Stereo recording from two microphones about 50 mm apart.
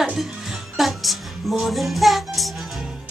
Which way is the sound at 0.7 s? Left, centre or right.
Centre.